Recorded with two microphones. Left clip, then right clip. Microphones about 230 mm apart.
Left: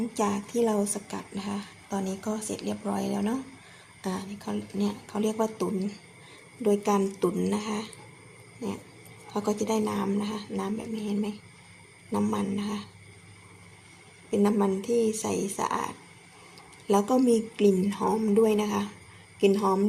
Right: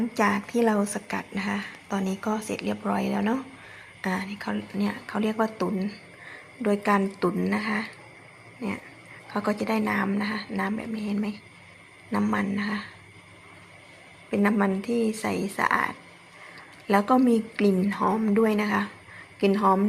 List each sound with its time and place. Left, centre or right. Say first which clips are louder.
0.1 s a woman's voice: right 6 dB; centre
9.5 s a woman's voice: right 1 dB; centre
14.3 s a woman's voice: right 1 dB; centre
14.8 s speech: left 1 dB; right
15.1 s a woman's voice: right 1 dB; centre